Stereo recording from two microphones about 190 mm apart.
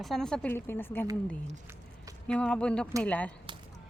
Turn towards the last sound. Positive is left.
turn(degrees=10)  # may be behind; listen again after turning